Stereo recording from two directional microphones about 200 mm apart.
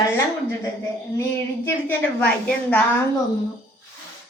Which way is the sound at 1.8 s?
5° left (ahead or behind).